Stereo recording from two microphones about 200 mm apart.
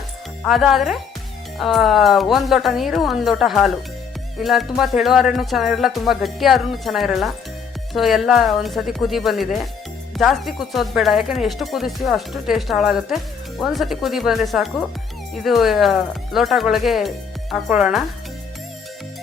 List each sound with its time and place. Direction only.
0.4 s speech: centre (ahead or behind)